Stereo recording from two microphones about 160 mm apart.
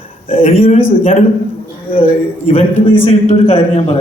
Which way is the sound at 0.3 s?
40° left (ahead or behind).